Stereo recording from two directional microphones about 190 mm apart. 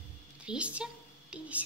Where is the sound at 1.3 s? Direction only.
5° right (ahead or behind).